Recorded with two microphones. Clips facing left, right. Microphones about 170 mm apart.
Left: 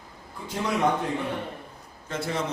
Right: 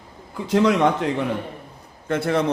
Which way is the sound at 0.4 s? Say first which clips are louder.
Right 8 dB; 90° right.